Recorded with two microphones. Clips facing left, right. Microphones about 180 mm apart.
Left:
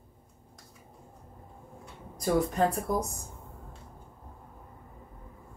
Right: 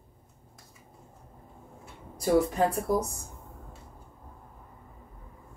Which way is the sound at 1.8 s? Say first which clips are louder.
Right 1 dB; 5° right (ahead or behind).